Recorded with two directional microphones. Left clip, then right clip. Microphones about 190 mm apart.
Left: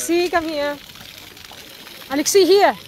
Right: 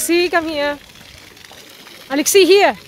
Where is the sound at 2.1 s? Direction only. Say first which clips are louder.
Right 3 dB; 35° right (ahead or behind).